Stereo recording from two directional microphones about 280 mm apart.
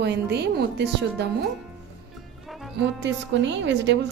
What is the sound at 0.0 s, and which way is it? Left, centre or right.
A woman's voice, right.